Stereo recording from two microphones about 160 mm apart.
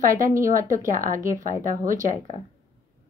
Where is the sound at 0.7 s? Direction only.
55° right (ahead or behind).